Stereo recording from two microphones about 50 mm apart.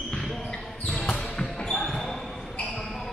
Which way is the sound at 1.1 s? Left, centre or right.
Centre.